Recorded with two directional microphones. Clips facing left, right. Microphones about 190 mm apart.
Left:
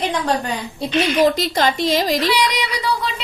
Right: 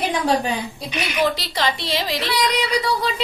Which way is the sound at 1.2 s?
45° left (ahead or behind).